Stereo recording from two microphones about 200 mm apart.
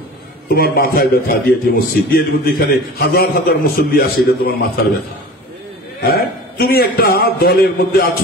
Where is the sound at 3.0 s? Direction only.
50° left (ahead or behind).